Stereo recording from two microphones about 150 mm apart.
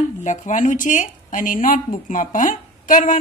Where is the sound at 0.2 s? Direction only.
55° left (ahead or behind).